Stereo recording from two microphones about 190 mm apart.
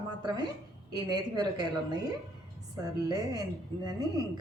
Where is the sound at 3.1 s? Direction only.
20° right (ahead or behind).